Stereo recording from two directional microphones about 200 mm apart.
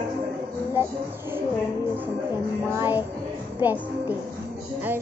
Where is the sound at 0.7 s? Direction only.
10° right (ahead or behind).